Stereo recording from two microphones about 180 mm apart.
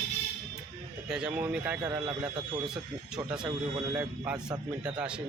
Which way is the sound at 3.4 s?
10° right (ahead or behind).